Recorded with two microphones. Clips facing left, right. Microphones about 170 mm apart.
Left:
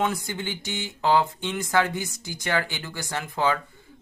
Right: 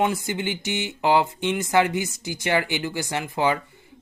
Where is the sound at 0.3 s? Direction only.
15° right (ahead or behind).